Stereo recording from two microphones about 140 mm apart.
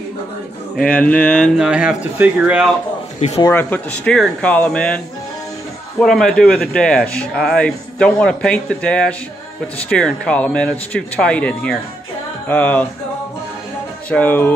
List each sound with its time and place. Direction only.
0.7 s speech: 10° left (ahead or behind)
1.6 s speech: 5° right (ahead or behind)
3.2 s speech: 50° left (ahead or behind)
3.5 s speech: 10° left (ahead or behind)
14.1 s speech: 15° left (ahead or behind)